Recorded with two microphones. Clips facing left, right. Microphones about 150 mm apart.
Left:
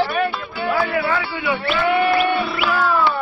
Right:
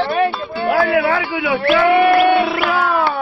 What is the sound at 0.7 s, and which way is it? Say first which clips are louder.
A man's voice: right 5 dB; 70° right (ahead or behind).